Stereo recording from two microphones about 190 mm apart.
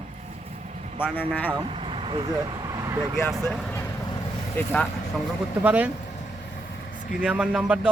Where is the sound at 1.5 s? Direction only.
25° right (ahead or behind).